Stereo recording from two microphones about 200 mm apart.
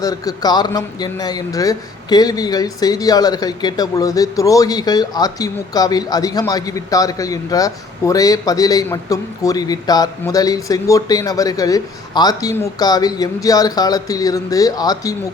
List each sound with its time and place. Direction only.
0.0 s speech: 20° left (ahead or behind)